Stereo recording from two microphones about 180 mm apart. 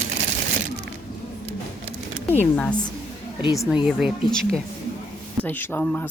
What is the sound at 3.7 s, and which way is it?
Speech, 5° right (ahead or behind).